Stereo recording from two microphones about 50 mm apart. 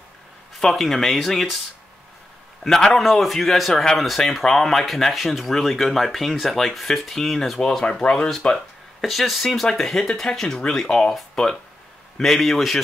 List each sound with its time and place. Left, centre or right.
0.6 s speech: centre
2.6 s speech: centre
8.0 s speech: centre
9.0 s speech: centre